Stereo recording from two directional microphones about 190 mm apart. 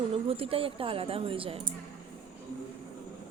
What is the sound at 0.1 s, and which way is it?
A woman's voice, 30° right (ahead or behind).